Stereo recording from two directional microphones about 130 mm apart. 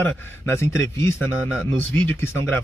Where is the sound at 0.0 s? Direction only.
20° left (ahead or behind).